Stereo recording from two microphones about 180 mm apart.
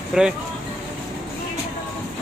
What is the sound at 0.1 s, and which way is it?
Speech, 5° right (ahead or behind).